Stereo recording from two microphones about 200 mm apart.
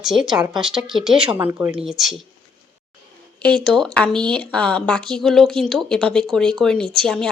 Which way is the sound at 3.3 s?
5° left (ahead or behind).